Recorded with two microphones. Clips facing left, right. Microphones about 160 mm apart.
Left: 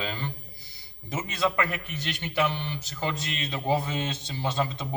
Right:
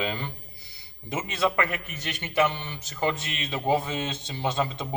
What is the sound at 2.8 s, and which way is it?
Speech, 20° right (ahead or behind).